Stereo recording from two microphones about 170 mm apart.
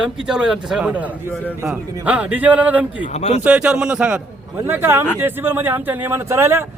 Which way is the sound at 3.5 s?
5° right (ahead or behind).